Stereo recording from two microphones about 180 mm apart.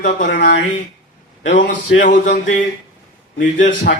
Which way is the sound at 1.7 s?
80° left.